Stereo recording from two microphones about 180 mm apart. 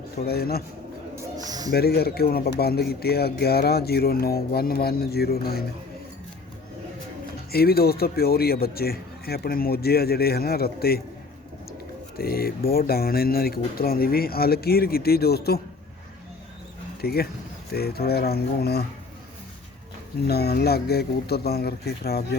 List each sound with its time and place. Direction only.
0.3 s speech: 60° left (ahead or behind)
1.1 s a sound: 20° right (ahead or behind)
1.7 s speech: 60° left (ahead or behind)
7.5 s speech: 60° left (ahead or behind)
12.1 s speech: 55° left (ahead or behind)
17.0 s speech: 60° left (ahead or behind)
20.2 s speech: 60° left (ahead or behind)